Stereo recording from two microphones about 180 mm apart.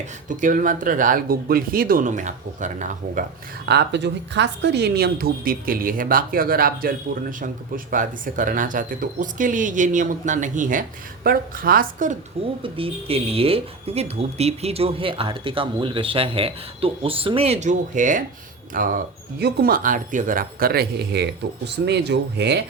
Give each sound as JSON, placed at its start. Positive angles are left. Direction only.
{"t": 0.3, "sound": "a woman's voice", "side_deg": -45}
{"t": 3.7, "sound": "a woman's voice", "side_deg": -70}
{"t": 12.6, "sound": "a woman's voice", "side_deg": -30}